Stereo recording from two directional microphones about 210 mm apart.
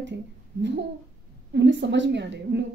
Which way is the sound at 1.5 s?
60° right (ahead or behind).